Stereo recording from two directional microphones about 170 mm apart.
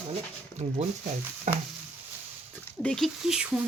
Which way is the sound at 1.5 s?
45° right (ahead or behind).